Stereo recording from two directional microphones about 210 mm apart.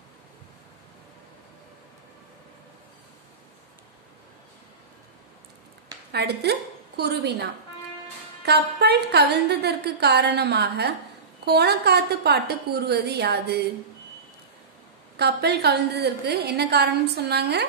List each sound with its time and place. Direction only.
6.1 s a woman's voice: 50° right (ahead or behind)
8.5 s a woman's voice: 50° right (ahead or behind)
15.1 s a woman's voice: 50° right (ahead or behind)